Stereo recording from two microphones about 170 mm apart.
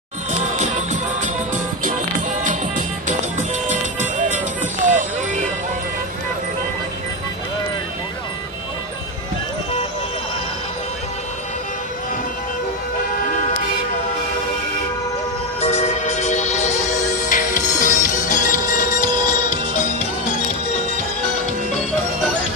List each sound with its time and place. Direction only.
0.3 s music: 45° right (ahead or behind)
3.1 s music: 45° right (ahead or behind)
4.9 s music: 45° right (ahead or behind)
15.6 s music: 40° left (ahead or behind)